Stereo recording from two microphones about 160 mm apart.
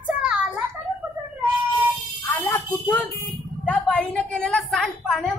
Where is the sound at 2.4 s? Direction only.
10° left (ahead or behind).